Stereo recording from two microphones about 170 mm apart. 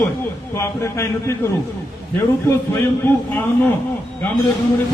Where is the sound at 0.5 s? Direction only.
15° left (ahead or behind).